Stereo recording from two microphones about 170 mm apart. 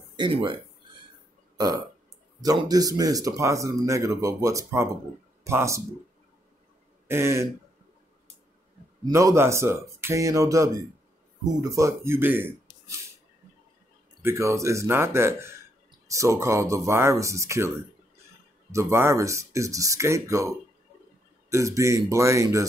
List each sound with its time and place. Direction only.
0.1 s speech: 30° right (ahead or behind)
2.4 s speech: 20° right (ahead or behind)
7.1 s speech: 15° right (ahead or behind)
9.0 s speech: 15° right (ahead or behind)
14.2 s speech: 15° right (ahead or behind)